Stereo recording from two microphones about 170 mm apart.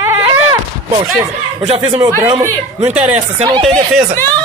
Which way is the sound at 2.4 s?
10° right (ahead or behind).